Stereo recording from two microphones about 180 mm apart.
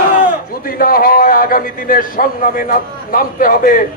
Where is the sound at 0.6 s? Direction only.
50° left (ahead or behind).